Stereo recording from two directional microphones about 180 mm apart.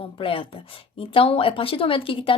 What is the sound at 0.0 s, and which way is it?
A woman's voice, 30° left (ahead or behind).